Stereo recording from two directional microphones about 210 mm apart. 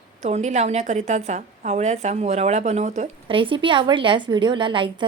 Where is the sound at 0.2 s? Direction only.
35° right (ahead or behind).